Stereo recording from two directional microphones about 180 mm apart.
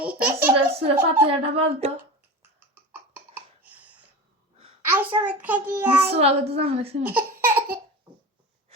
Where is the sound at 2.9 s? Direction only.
10° right (ahead or behind).